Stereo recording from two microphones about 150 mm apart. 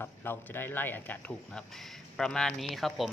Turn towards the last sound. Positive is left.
turn(degrees=0)  # may be behind; listen again after turning